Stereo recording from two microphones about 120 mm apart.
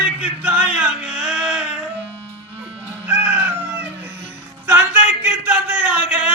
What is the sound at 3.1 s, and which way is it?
Music, 15° right (ahead or behind).